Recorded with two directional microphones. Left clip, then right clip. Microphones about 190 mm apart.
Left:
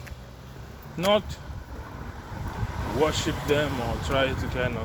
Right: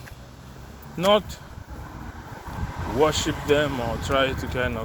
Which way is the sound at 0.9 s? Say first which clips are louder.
Right 3 dB; 55° right (ahead or behind).